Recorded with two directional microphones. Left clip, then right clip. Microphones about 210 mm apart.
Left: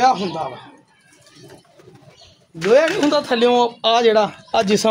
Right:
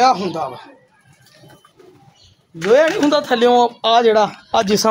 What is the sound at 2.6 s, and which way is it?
A man's voice, 20° right (ahead or behind).